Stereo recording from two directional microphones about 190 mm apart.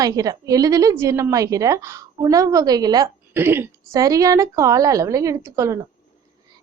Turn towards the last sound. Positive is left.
turn(degrees=-15)  # may be behind; listen again after turning